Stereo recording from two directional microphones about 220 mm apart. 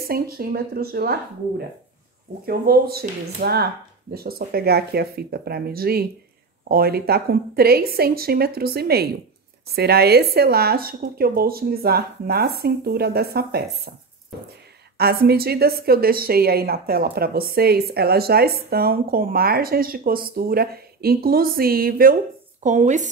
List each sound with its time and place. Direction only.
0.1 s a woman's voice: 45° right (ahead or behind)
2.4 s a woman's voice: 45° right (ahead or behind)
15.0 s a woman's voice: 45° right (ahead or behind)